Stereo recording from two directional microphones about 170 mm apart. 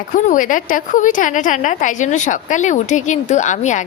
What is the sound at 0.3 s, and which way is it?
A woman's voice, 50° left (ahead or behind).